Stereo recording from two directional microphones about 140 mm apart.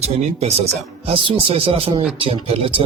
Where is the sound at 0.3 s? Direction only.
50° right (ahead or behind).